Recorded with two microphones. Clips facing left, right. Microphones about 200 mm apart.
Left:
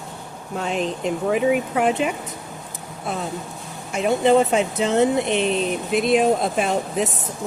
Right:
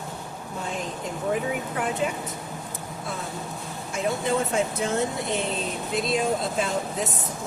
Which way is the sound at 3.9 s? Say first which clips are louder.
Left 8 dB; 75° left (ahead or behind).